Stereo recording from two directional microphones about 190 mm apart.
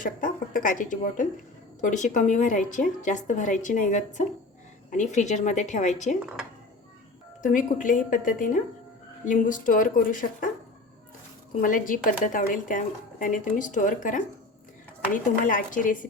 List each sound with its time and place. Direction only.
0.0 s a woman's voice: 45° left (ahead or behind)
7.4 s speech: 45° left (ahead or behind)
11.6 s speech: 45° left (ahead or behind)